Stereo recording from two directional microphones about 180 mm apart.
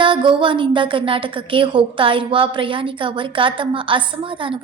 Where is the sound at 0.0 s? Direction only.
25° right (ahead or behind).